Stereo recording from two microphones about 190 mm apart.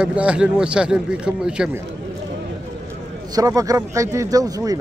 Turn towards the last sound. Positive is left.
turn(degrees=-20)  # may be behind; listen again after turning